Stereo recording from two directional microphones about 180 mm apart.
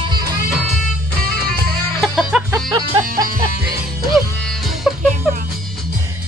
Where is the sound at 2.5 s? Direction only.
20° right (ahead or behind).